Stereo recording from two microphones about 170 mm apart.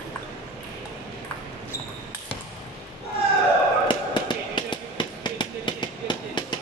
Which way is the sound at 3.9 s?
25° left (ahead or behind).